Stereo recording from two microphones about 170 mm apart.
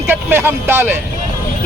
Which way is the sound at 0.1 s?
10° right (ahead or behind).